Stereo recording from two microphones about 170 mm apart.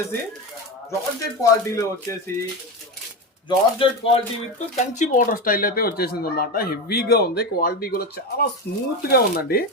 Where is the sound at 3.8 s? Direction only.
35° left (ahead or behind).